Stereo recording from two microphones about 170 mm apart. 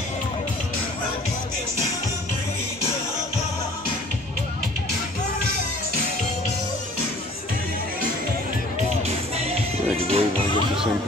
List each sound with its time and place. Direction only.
9.4 s music: 35° right (ahead or behind)